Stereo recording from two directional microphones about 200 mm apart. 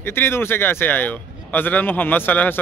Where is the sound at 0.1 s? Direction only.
10° left (ahead or behind).